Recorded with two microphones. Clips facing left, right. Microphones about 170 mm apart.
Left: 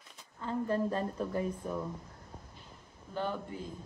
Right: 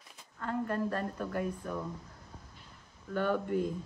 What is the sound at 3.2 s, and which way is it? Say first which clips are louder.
Speech: right 7 dB; 60° right (ahead or behind).